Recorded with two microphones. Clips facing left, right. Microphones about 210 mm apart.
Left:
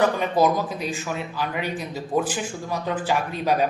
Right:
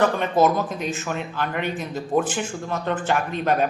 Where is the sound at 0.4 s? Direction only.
Centre (ahead or behind).